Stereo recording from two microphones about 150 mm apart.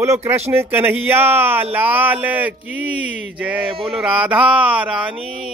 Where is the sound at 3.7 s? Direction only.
40° right (ahead or behind).